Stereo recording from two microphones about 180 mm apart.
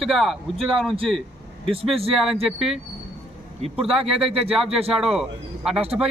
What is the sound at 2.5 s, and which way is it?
Speech, centre (ahead or behind).